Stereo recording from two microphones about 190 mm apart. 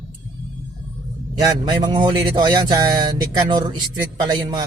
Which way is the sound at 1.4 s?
20° right (ahead or behind).